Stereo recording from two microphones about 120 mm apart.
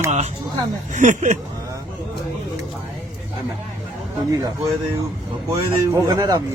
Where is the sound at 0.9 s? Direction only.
90° right.